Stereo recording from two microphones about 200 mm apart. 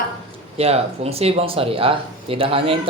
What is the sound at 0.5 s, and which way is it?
A man's voice, 30° right (ahead or behind).